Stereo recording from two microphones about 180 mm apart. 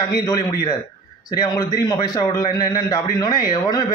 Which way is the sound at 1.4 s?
20° left (ahead or behind).